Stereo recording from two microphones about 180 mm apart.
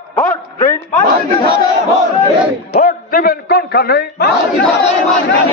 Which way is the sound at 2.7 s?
55° left (ahead or behind).